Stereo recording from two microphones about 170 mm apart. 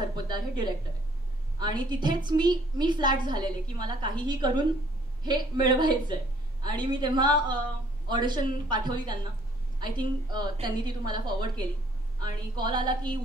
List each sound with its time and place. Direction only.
0.0 s a woman's voice: 25° right (ahead or behind)